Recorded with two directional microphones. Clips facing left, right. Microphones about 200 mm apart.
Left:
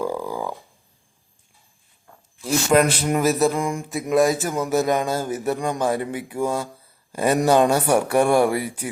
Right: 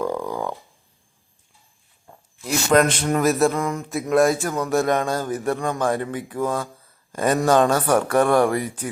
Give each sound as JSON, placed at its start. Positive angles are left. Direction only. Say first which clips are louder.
{"t": 0.0, "sound": "a sound", "louder": "right 1 dB", "side_deg": 5}
{"t": 2.1, "sound": "zipper", "louder": "right 3 dB", "side_deg": -25}
{"t": 2.4, "sound": "a man's voice", "louder": "even", "side_deg": 5}
{"t": 3.6, "sound": "speech", "louder": "even", "side_deg": 10}
{"t": 4.1, "sound": "speech", "louder": "even", "side_deg": 0}